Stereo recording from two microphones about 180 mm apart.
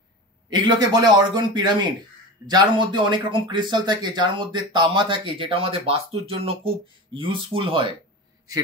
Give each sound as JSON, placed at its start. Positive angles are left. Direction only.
{"t": 0.7, "sound": "speech", "side_deg": -25}